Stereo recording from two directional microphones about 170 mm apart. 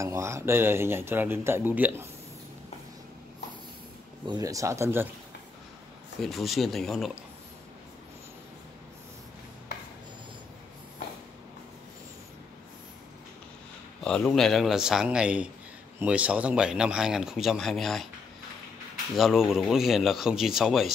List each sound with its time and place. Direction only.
0.0 s speech: 15° right (ahead or behind)
4.3 s speech: 20° right (ahead or behind)
6.2 s speech: centre (ahead or behind)
14.0 s speech: 5° left (ahead or behind)
19.1 s speech: centre (ahead or behind)